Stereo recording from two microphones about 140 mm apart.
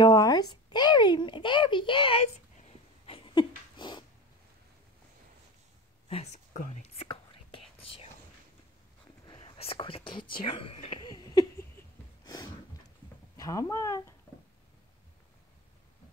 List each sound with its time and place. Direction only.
0.0 s speech: 30° left (ahead or behind)
3.1 s cat: 35° left (ahead or behind)
6.0 s whispering: 50° left (ahead or behind)
7.8 s whispering: 45° left (ahead or behind)
9.4 s whispering: 45° left (ahead or behind)
10.4 s speech: 35° left (ahead or behind)
11.1 s laughter: 25° left (ahead or behind)
13.4 s speech: 25° left (ahead or behind)